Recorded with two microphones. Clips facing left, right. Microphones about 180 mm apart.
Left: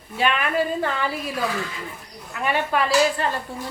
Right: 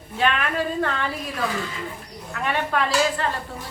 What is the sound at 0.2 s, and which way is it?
Speech, 10° left (ahead or behind).